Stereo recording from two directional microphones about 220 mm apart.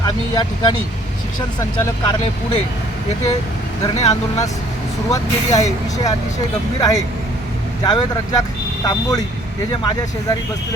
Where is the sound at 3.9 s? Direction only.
30° left (ahead or behind).